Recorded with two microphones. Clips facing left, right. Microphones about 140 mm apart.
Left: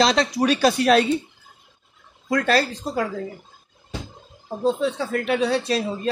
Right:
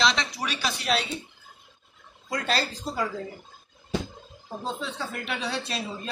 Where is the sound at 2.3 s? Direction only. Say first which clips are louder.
Left 8 dB; 60° left (ahead or behind).